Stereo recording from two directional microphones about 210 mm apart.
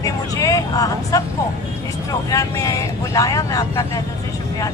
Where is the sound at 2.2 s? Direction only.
15° left (ahead or behind).